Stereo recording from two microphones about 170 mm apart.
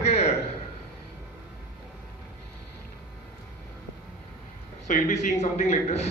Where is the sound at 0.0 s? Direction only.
40° left (ahead or behind).